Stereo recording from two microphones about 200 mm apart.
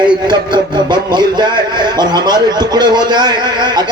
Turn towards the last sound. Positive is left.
turn(degrees=-20)  # may be behind; listen again after turning